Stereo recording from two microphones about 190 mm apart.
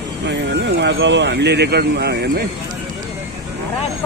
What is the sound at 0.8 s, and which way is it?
Speech, 70° right (ahead or behind).